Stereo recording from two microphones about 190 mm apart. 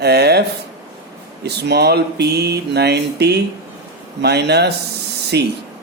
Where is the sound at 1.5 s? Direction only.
60° right (ahead or behind).